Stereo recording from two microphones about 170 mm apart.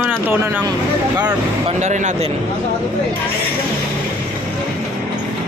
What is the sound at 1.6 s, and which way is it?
Speech, 45° right (ahead or behind).